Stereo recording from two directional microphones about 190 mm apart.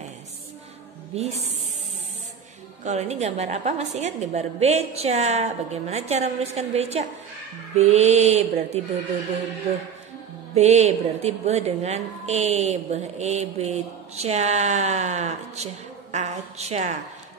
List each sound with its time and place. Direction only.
1.1 s a woman's voice: 35° right (ahead or behind)
2.8 s a woman's voice: 35° right (ahead or behind)
10.5 s a woman's voice: 35° right (ahead or behind)